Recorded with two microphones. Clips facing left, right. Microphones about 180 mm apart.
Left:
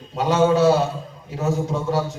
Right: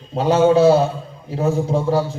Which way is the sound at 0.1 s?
30° right (ahead or behind).